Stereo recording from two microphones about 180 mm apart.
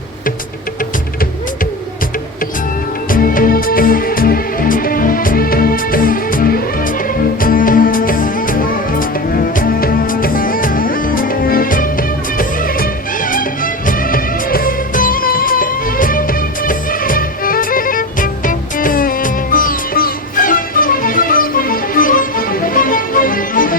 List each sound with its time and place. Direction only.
3.1 s music: 50° left (ahead or behind)